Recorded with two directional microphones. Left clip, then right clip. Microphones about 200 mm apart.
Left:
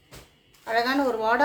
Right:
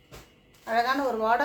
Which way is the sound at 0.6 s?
45° left (ahead or behind).